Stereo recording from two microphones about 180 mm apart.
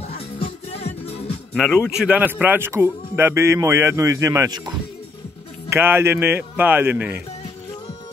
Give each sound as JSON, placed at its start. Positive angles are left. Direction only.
{"t": 0.0, "sound": "music", "side_deg": 35}
{"t": 1.6, "sound": "speech", "side_deg": 0}